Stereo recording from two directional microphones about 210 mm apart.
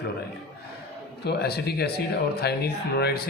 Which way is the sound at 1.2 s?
50° left (ahead or behind).